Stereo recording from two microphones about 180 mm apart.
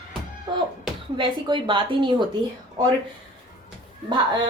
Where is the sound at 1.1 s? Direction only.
25° right (ahead or behind).